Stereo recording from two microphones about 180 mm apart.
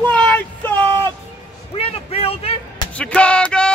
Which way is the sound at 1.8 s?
35° left (ahead or behind).